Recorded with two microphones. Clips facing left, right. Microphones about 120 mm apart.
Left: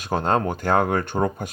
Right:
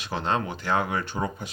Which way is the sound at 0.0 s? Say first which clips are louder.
Left 6 dB; 45° left (ahead or behind).